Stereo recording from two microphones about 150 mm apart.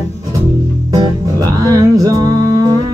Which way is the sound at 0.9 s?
25° right (ahead or behind).